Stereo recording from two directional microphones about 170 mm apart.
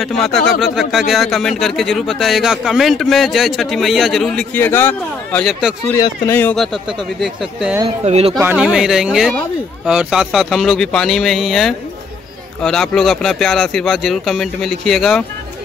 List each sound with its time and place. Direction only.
0.0 s a man's voice: centre (ahead or behind)
5.9 s speech: 20° left (ahead or behind)
8.0 s speech: 35° right (ahead or behind)
8.4 s a man's voice: 5° right (ahead or behind)